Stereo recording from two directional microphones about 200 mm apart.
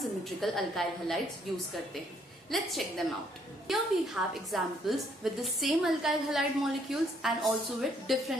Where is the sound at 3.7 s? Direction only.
Centre (ahead or behind).